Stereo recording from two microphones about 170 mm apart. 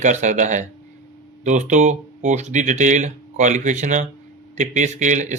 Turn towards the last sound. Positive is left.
turn(degrees=-45)  # may be behind; listen again after turning